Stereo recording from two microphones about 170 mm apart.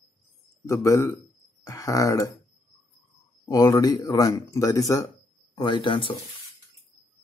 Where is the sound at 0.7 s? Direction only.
20° left (ahead or behind).